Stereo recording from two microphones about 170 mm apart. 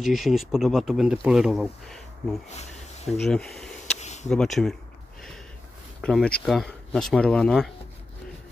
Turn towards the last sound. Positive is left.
turn(degrees=5)  # may be behind; listen again after turning